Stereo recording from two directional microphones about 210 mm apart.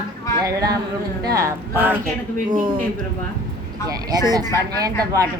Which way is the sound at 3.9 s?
15° right (ahead or behind).